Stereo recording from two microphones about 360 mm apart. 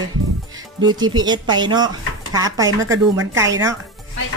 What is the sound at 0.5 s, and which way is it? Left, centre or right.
Speech, centre.